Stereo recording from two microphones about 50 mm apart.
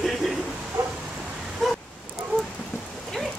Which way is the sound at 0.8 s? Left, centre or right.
Right.